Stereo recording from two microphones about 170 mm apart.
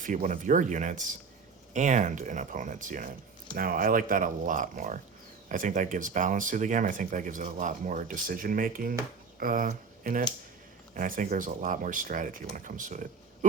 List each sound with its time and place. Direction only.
0.0 s speech: 50° right (ahead or behind)